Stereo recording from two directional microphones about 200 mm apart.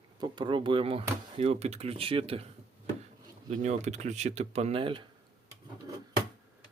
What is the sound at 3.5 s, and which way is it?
Speech, 35° right (ahead or behind).